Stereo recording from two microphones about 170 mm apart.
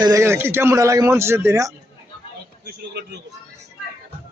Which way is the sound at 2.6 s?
75° right (ahead or behind).